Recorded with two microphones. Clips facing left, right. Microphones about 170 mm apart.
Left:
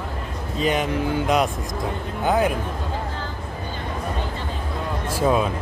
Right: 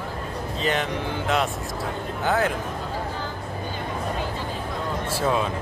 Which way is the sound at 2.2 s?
15° left (ahead or behind).